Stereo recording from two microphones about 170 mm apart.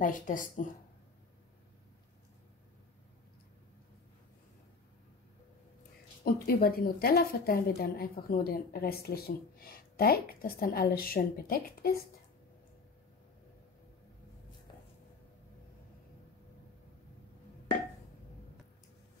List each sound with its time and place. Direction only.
0.0 s speech: 50° left (ahead or behind)
6.2 s a woman's voice: 60° left (ahead or behind)